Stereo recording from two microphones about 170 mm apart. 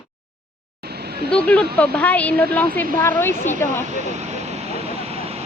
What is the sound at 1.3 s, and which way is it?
A woman's voice, 5° left (ahead or behind).